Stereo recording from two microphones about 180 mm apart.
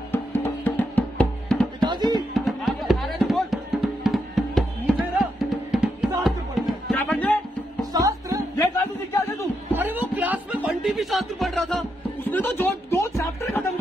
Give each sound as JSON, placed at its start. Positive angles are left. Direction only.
{"t": 0.1, "sound": "music", "side_deg": 10}
{"t": 1.8, "sound": "music", "side_deg": -25}
{"t": 2.3, "sound": "music", "side_deg": 0}
{"t": 7.9, "sound": "music", "side_deg": -20}
{"t": 8.5, "sound": "a sound", "side_deg": 15}
{"t": 9.7, "sound": "a sound", "side_deg": -10}
{"t": 12.3, "sound": "music", "side_deg": 10}